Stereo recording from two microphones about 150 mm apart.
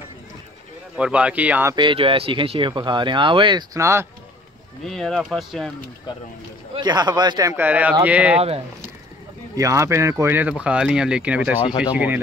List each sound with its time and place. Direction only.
0.9 s speech: 10° right (ahead or behind)
1.7 s speech: 30° right (ahead or behind)
3.7 s a man's voice: 20° right (ahead or behind)
4.8 s speech: 5° left (ahead or behind)
6.7 s a man's voice: 30° right (ahead or behind); by 8.4 s 10° right (ahead or behind)
8.4 s speech: 40° right (ahead or behind)
9.6 s speech: 20° right (ahead or behind)